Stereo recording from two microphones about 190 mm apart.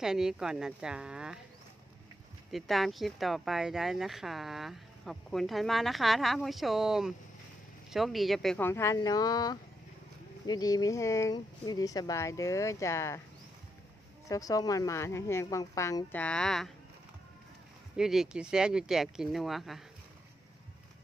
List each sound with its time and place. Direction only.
0.0 s speech: 5° right (ahead or behind)
2.5 s speech: centre (ahead or behind)
14.3 s speech: 20° left (ahead or behind); by 16.7 s centre (ahead or behind)
17.9 s speech: centre (ahead or behind)